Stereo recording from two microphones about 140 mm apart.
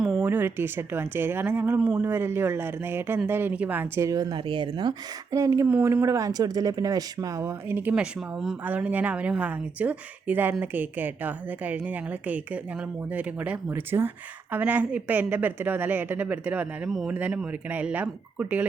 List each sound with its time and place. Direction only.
0.2 s speech: 15° right (ahead or behind); by 4.9 s 35° right (ahead or behind)
5.3 s speech: 20° right (ahead or behind)